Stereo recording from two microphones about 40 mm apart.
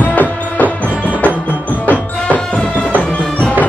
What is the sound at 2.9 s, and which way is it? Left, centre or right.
Music, left.